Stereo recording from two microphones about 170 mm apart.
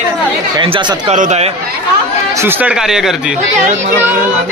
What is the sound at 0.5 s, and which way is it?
Speech, 30° right (ahead or behind).